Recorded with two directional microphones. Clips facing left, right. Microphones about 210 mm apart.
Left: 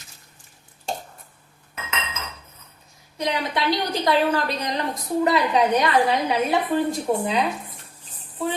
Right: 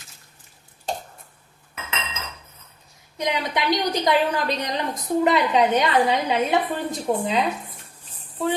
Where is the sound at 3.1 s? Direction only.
20° right (ahead or behind).